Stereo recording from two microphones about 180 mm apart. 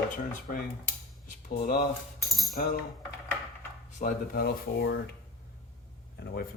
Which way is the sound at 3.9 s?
50° left (ahead or behind).